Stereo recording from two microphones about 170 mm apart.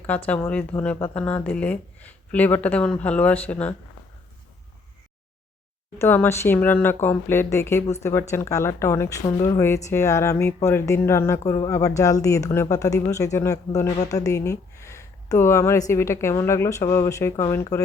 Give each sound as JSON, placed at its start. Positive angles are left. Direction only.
{"t": 0.3, "sound": "speech", "side_deg": 10}
{"t": 6.0, "sound": "speech", "side_deg": 10}